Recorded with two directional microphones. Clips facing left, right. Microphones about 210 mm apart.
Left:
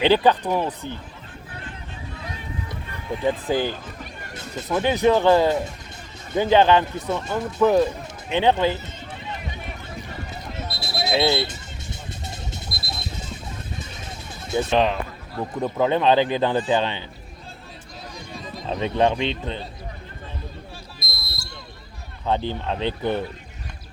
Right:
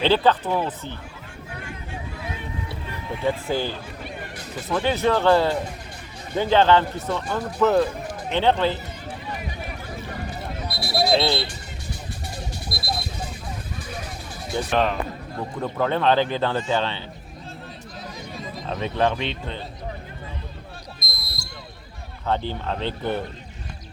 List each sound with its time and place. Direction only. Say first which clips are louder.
0.0 s a man's voice: left 2 dB; 15° left (ahead or behind)
3.2 s a man's voice: left 2 dB; 15° left (ahead or behind)
10.7 s a sound: right 4 dB; 25° left (ahead or behind)
12.6 s a sound: right 5 dB; 25° left (ahead or behind)
14.5 s a man's voice: left 2 dB; 20° left (ahead or behind)
18.7 s speech: left 2 dB; 20° left (ahead or behind)
22.3 s a man's voice: left 1 dB; 15° left (ahead or behind)